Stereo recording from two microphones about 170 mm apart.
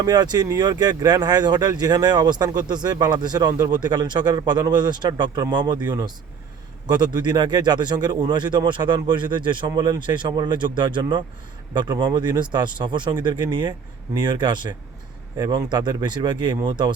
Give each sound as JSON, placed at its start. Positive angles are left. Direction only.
{"t": 0.0, "sound": "speech", "side_deg": -25}